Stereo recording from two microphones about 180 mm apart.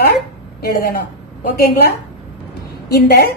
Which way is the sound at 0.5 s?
55° left (ahead or behind).